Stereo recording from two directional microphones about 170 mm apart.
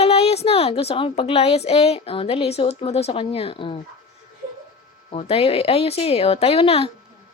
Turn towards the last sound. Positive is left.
turn(degrees=35)  # may be behind; listen again after turning